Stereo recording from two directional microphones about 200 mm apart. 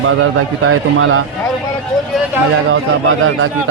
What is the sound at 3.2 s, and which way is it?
Speech, 90° right.